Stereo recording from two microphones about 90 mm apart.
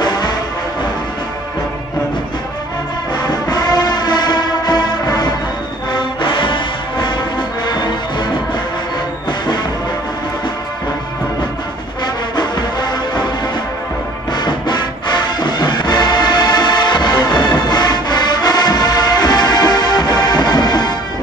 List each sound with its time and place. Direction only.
0.0 s music: 50° left (ahead or behind)
3.3 s music: 50° left (ahead or behind)
6.2 s music: 60° left (ahead or behind)
12.4 s music: 55° left (ahead or behind)
14.3 s music: 55° left (ahead or behind)